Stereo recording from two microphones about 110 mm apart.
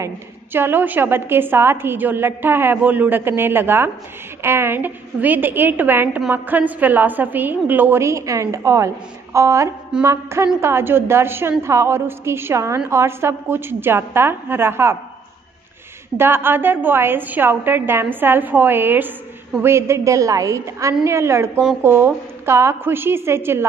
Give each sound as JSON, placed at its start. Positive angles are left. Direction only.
{"t": 0.0, "sound": "a woman's voice", "side_deg": -20}
{"t": 16.2, "sound": "a woman's voice", "side_deg": -20}